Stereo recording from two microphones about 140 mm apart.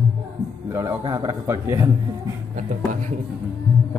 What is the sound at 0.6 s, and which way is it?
Music, 15° right (ahead or behind).